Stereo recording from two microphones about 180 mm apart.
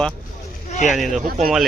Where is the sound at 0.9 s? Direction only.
Centre (ahead or behind).